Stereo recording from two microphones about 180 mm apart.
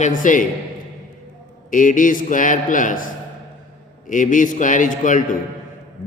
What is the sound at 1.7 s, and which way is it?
A man's voice, 45° left (ahead or behind).